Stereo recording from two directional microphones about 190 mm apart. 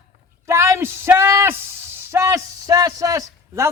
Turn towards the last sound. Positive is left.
turn(degrees=-15)  # may be behind; listen again after turning